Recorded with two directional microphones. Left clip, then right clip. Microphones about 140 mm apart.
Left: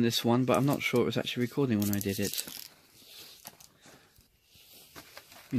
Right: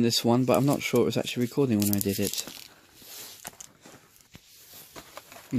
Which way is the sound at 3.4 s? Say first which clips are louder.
Right 7 dB; 70° right (ahead or behind).